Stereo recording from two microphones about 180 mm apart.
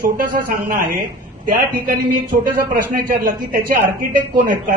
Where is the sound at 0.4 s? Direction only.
50° right (ahead or behind).